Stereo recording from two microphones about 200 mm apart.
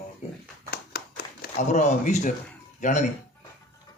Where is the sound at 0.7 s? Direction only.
50° left (ahead or behind).